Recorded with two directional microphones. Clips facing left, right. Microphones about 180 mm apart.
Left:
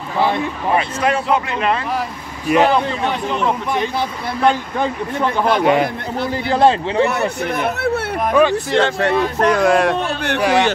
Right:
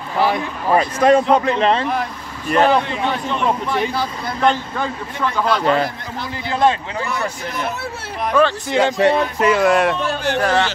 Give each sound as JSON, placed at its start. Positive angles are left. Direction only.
{"t": 1.0, "sound": "speech", "side_deg": -35}
{"t": 2.0, "sound": "speech", "side_deg": 5}
{"t": 4.4, "sound": "speech", "side_deg": 10}
{"t": 5.2, "sound": "a man's voice", "side_deg": 20}
{"t": 6.5, "sound": "a man's voice", "side_deg": 35}
{"t": 7.4, "sound": "speech", "side_deg": 60}
{"t": 8.6, "sound": "speech", "side_deg": -10}
{"t": 9.5, "sound": "speech", "side_deg": 0}
{"t": 9.9, "sound": "speech", "side_deg": 60}
{"t": 10.4, "sound": "speech", "side_deg": 15}